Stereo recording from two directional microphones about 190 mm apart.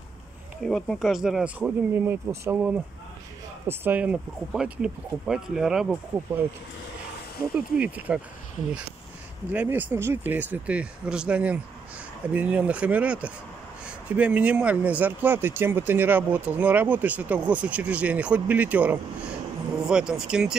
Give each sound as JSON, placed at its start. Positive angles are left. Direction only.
{"t": 0.7, "sound": "speech", "side_deg": 5}
{"t": 7.5, "sound": "speech", "side_deg": -5}
{"t": 9.5, "sound": "speech", "side_deg": -10}